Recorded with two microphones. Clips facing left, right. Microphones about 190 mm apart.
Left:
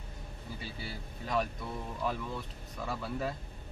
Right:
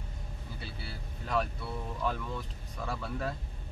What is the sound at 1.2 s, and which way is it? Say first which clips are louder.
Speech: even; 5° left (ahead or behind).